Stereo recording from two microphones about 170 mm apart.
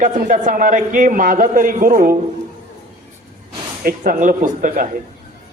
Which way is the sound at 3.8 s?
50° right (ahead or behind).